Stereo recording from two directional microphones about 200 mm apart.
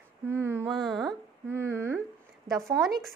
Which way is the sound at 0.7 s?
Centre (ahead or behind).